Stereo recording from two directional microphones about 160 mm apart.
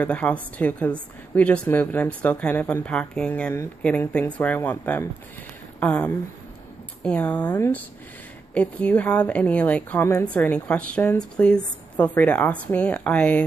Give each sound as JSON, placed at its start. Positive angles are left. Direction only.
{"t": 0.0, "sound": "a woman's voice", "side_deg": 10}